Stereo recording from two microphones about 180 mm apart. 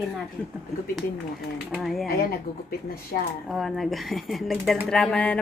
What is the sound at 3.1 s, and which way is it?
Speech, 50° left (ahead or behind).